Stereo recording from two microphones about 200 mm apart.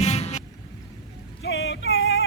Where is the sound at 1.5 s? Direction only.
70° left (ahead or behind).